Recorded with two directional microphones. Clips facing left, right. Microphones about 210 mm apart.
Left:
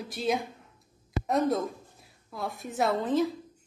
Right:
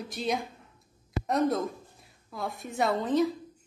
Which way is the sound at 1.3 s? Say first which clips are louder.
Even; centre (ahead or behind).